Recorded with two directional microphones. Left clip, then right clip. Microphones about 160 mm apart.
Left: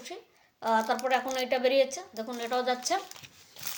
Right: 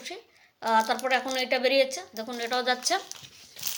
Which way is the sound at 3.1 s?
25° left (ahead or behind).